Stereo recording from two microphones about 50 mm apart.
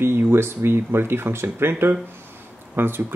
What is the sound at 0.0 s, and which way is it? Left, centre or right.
Speech, right.